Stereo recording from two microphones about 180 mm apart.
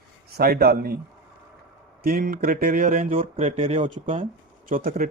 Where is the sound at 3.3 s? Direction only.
35° right (ahead or behind).